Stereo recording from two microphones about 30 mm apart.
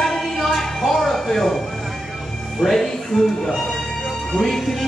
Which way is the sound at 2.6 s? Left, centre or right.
Centre.